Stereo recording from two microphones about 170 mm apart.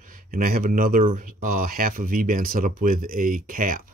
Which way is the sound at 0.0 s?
55° right (ahead or behind).